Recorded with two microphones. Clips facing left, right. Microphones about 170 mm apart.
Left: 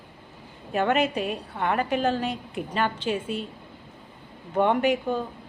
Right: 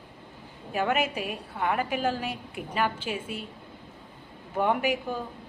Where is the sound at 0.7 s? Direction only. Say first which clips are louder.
Left 4 dB; 5° right (ahead or behind).